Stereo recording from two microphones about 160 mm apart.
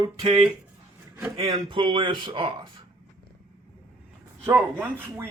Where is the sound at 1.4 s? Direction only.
25° right (ahead or behind).